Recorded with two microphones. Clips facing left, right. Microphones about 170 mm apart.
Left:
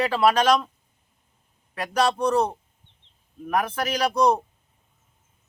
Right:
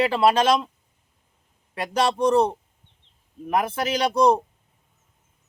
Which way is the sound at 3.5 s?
10° right (ahead or behind).